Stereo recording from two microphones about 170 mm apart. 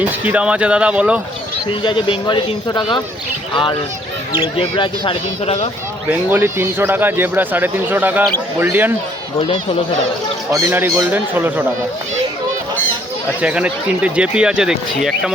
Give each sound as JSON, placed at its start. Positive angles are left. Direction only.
{"t": 0.0, "sound": "speech", "side_deg": -10}
{"t": 1.8, "sound": "a man's voice", "side_deg": 30}
{"t": 6.1, "sound": "speech", "side_deg": -15}
{"t": 10.5, "sound": "speech", "side_deg": -15}
{"t": 13.4, "sound": "speech", "side_deg": -5}